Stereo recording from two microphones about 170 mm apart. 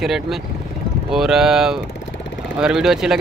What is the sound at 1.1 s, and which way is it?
Speech, centre (ahead or behind).